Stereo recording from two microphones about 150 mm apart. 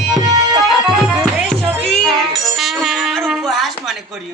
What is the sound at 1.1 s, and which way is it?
Music, 5° left (ahead or behind).